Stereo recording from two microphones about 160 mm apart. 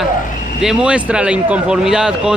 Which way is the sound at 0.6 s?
5° right (ahead or behind).